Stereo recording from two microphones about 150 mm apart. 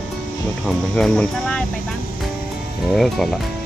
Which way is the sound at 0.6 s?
5° left (ahead or behind).